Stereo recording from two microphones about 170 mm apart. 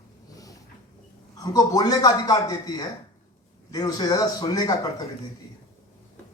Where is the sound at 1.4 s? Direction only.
20° left (ahead or behind).